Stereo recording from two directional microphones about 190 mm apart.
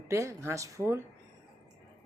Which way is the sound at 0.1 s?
15° right (ahead or behind).